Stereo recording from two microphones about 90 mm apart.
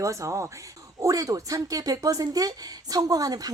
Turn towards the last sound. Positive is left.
turn(degrees=-45)  # may be behind; listen again after turning